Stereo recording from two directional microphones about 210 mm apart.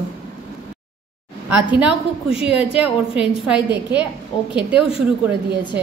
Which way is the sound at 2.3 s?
25° left (ahead or behind).